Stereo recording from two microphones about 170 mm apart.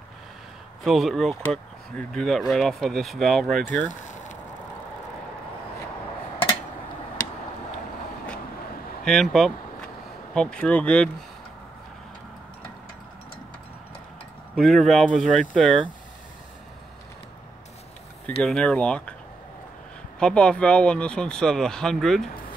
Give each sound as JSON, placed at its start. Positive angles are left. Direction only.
{"t": 0.8, "sound": "speech", "side_deg": 0}
{"t": 3.9, "sound": "a sound", "side_deg": 45}
{"t": 9.0, "sound": "speech", "side_deg": 5}
{"t": 14.5, "sound": "speech", "side_deg": 0}
{"t": 18.4, "sound": "speech", "side_deg": 5}
{"t": 20.2, "sound": "speech", "side_deg": 5}